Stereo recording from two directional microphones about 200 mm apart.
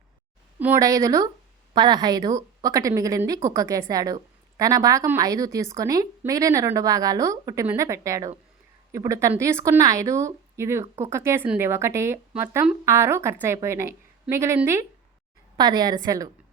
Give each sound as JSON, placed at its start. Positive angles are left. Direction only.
{"t": 0.6, "sound": "a woman's voice", "side_deg": -15}